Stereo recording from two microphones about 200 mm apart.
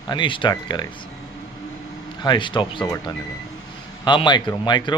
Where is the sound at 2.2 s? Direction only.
20° left (ahead or behind).